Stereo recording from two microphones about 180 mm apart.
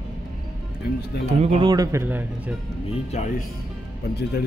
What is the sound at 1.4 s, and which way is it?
A man's voice, 30° right (ahead or behind).